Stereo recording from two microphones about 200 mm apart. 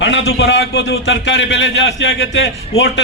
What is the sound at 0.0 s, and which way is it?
A man's voice, 60° left (ahead or behind).